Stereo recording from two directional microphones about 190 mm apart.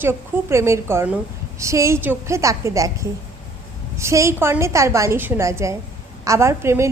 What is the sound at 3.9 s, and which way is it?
A woman's voice, 15° right (ahead or behind).